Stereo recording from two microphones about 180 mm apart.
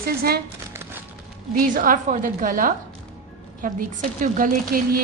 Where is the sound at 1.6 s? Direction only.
50° right (ahead or behind).